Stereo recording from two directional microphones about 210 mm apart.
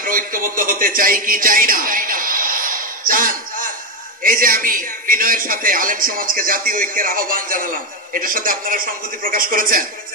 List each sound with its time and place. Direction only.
0.0 s speech: 40° right (ahead or behind)
3.1 s a sound: 40° right (ahead or behind)
4.2 s speech: 40° right (ahead or behind)